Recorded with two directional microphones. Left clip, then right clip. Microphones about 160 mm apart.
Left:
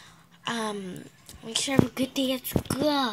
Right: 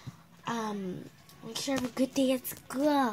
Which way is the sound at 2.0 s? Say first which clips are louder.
Left 1 dB; 10° right (ahead or behind).